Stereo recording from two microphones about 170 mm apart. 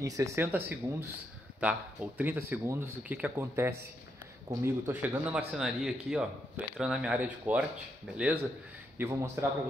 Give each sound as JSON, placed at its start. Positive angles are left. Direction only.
{"t": 0.0, "sound": "speech", "side_deg": -20}
{"t": 8.9, "sound": "speech", "side_deg": -15}